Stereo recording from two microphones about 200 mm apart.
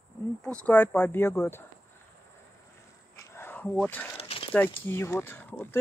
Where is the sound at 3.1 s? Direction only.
15° left (ahead or behind).